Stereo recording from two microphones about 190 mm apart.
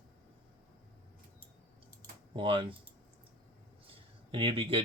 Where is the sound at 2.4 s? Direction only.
25° right (ahead or behind).